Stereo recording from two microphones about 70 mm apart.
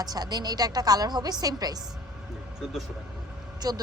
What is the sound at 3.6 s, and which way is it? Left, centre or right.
Speech, right.